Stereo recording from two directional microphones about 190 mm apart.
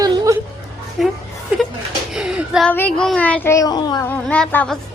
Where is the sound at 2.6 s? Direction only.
10° left (ahead or behind).